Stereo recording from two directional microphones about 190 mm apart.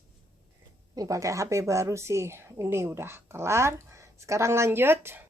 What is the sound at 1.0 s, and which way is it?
Speech, 15° right (ahead or behind).